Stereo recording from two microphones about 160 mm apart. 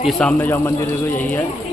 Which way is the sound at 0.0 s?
5° left (ahead or behind).